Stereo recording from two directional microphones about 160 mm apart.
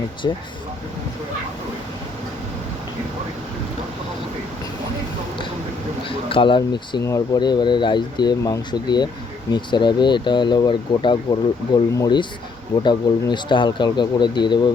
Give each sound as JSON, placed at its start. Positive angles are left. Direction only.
{"t": 0.2, "sound": "speech", "side_deg": 25}
{"t": 6.1, "sound": "speech", "side_deg": 35}